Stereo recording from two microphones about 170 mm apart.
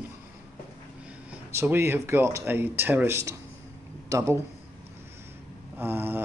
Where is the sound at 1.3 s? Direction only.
15° right (ahead or behind).